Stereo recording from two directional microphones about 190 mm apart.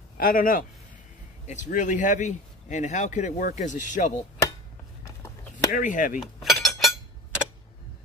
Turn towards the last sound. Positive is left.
turn(degrees=0)  # may be behind; listen again after turning